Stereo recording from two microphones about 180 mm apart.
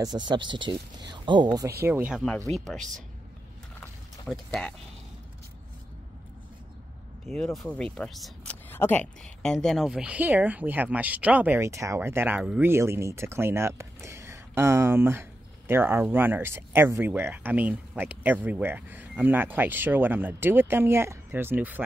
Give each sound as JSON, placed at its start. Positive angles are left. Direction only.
{"t": 0.3, "sound": "speech", "side_deg": -25}
{"t": 1.8, "sound": "a woman's voice", "side_deg": -10}
{"t": 2.2, "sound": "speech", "side_deg": 5}
{"t": 3.8, "sound": "a sound", "side_deg": 5}
{"t": 7.2, "sound": "a woman's voice", "side_deg": 5}